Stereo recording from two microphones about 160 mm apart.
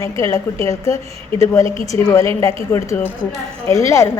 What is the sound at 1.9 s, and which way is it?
A woman's voice, 20° left (ahead or behind).